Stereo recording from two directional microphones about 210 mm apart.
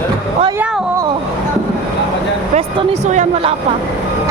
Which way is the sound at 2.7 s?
30° right (ahead or behind).